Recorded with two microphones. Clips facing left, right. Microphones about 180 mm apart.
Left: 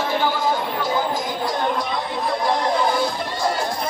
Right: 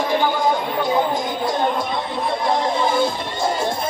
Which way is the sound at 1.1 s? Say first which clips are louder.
Right 2 dB; centre (ahead or behind).